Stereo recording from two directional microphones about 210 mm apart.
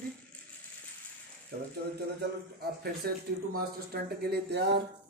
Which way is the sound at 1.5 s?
50° right (ahead or behind).